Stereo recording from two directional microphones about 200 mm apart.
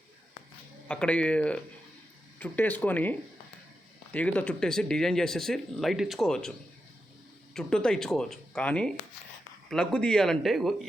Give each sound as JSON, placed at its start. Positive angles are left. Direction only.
{"t": 0.9, "sound": "speech", "side_deg": 5}
{"t": 7.5, "sound": "speech", "side_deg": 5}